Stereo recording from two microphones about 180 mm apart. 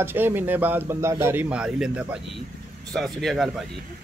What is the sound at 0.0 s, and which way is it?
A man's voice, 10° right (ahead or behind).